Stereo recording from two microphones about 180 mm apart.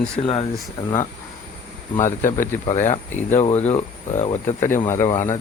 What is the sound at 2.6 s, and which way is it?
Speech, 40° left (ahead or behind).